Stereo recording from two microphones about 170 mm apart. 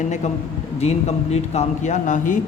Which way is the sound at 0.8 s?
40° left (ahead or behind).